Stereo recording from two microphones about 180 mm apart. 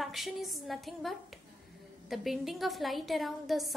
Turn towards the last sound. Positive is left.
turn(degrees=0)  # may be behind; listen again after turning